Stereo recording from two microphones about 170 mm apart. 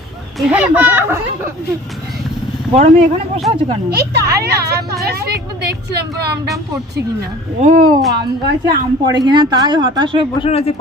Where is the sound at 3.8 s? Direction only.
70° right (ahead or behind).